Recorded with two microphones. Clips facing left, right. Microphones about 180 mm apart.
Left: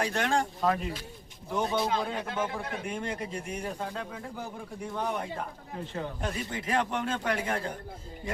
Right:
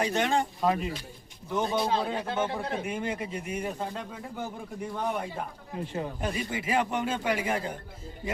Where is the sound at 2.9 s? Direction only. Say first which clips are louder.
Right 2 dB; 5° right (ahead or behind).